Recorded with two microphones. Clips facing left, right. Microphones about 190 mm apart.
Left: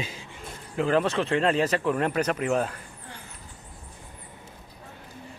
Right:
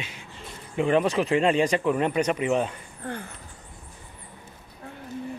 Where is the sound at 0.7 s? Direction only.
Centre (ahead or behind).